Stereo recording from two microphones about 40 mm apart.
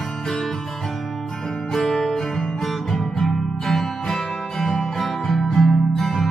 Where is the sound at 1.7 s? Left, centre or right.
Centre.